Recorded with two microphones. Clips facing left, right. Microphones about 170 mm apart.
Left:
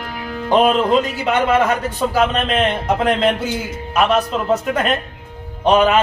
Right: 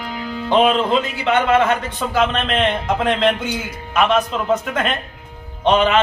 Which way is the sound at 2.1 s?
35° left (ahead or behind).